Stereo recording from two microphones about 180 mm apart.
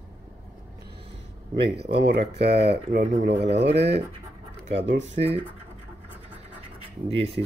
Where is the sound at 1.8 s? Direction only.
65° right (ahead or behind).